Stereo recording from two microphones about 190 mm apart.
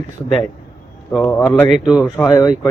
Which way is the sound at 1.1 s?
5° left (ahead or behind).